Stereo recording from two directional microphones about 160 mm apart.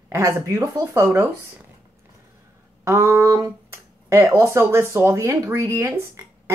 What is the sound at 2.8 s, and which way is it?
Speech, 15° right (ahead or behind).